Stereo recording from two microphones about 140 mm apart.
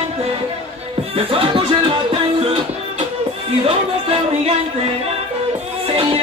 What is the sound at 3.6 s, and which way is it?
Music, 45° right (ahead or behind).